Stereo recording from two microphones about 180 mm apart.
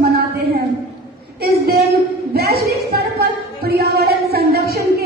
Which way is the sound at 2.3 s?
60° right (ahead or behind).